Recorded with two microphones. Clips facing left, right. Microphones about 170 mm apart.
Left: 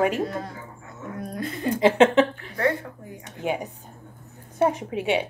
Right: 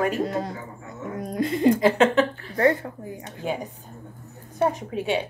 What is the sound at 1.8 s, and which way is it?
Speech, 25° left (ahead or behind).